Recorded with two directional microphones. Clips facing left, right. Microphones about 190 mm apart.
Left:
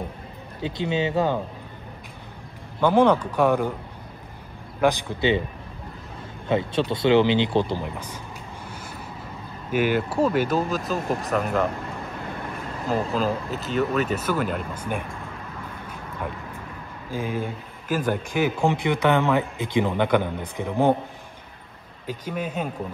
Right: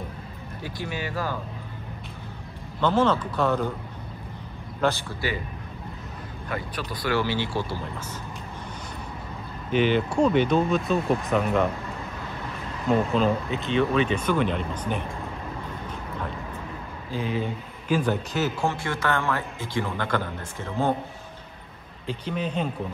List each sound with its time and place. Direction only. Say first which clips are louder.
0.6 s speech: left 8 dB; 20° left (ahead or behind)
2.8 s speech: left 4 dB; 15° left (ahead or behind)
4.7 s speech: left 4 dB; 15° left (ahead or behind)
6.5 s speech: left 10 dB; 25° left (ahead or behind)
9.7 s speech: even; 5° left (ahead or behind)
12.9 s speech: right 2 dB; centre (ahead or behind)
17.1 s speech: even; 45° left (ahead or behind)
17.4 s speech: even; 10° left (ahead or behind)
22.0 s speech: even; 10° left (ahead or behind)